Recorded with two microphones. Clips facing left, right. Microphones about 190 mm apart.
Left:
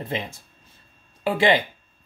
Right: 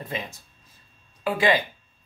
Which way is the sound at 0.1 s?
25° left (ahead or behind).